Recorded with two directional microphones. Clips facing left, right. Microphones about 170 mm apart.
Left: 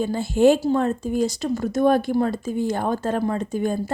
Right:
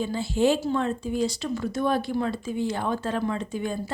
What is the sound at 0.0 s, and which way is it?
A woman's voice, 50° left (ahead or behind).